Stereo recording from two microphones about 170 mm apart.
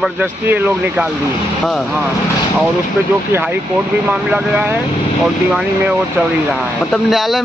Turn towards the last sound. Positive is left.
turn(degrees=0)  # may be behind; listen again after turning